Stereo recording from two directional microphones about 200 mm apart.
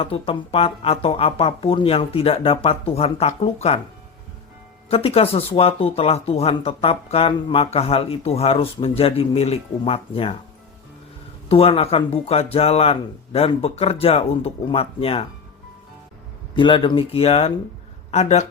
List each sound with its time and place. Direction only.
0.0 s speech: 30° left (ahead or behind)
4.9 s speech: 30° left (ahead or behind)
11.4 s speech: 30° left (ahead or behind)
16.6 s speech: 25° left (ahead or behind)